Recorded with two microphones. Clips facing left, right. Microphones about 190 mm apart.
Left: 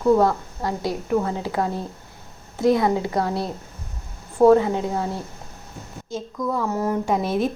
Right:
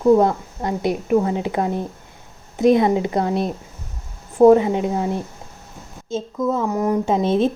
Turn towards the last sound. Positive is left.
turn(degrees=-25)  # may be behind; listen again after turning